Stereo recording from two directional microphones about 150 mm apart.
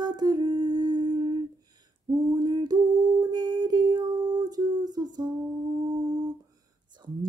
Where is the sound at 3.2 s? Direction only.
25° right (ahead or behind).